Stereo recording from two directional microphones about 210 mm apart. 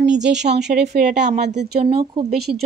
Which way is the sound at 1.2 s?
35° right (ahead or behind).